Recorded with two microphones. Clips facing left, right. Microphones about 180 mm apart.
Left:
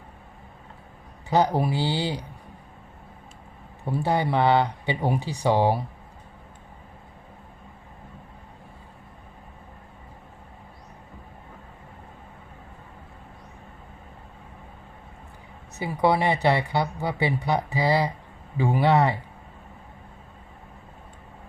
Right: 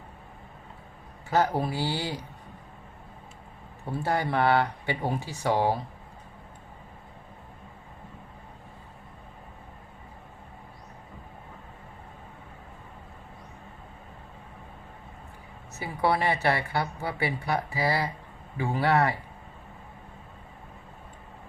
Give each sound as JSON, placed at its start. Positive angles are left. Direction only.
{"t": 1.3, "sound": "a woman's voice", "side_deg": 20}
{"t": 3.9, "sound": "a woman's voice", "side_deg": 15}
{"t": 15.8, "sound": "a woman's voice", "side_deg": 15}